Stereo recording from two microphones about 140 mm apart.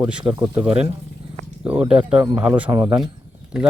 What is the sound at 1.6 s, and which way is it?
Speech, 10° right (ahead or behind).